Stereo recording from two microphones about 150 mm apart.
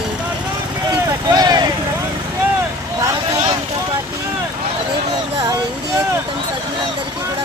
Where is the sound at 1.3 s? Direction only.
25° right (ahead or behind).